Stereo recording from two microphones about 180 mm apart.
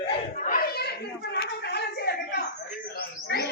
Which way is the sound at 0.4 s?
55° left (ahead or behind).